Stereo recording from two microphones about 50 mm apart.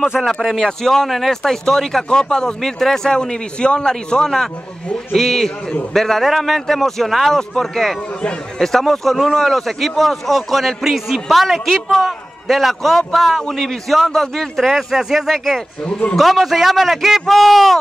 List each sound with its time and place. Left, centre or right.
0.2 s speech: centre
14.7 s speech: centre
15.3 s speech: centre
15.8 s a man's voice: left
16.2 s speech: centre